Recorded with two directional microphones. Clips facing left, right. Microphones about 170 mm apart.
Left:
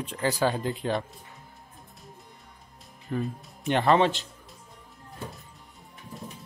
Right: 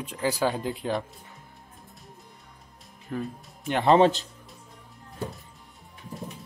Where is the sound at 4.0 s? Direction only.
40° right (ahead or behind).